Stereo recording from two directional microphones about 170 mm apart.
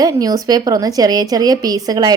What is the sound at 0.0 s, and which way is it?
A woman's voice, 20° right (ahead or behind).